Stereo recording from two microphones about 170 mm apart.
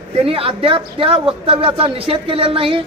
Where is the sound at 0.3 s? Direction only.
35° right (ahead or behind).